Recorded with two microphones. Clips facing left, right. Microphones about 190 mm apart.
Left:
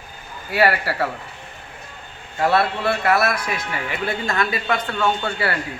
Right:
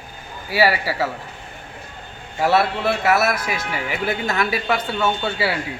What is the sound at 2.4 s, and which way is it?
Speech, 5° right (ahead or behind).